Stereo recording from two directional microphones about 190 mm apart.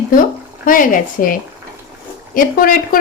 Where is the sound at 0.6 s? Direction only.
45° left (ahead or behind).